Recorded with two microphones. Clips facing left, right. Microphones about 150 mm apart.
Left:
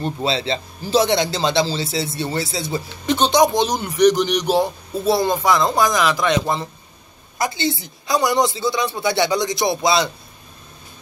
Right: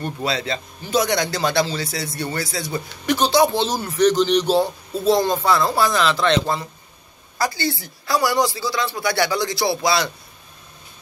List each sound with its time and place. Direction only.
0.0 s a man's voice: 25° left (ahead or behind)